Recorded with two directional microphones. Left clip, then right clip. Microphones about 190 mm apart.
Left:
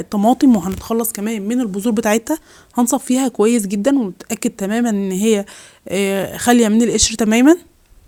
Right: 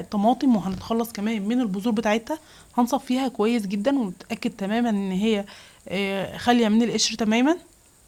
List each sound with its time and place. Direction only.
0.1 s speech: 40° left (ahead or behind)